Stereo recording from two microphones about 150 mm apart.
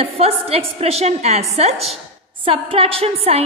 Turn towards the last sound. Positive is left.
turn(degrees=-40)  # may be behind; listen again after turning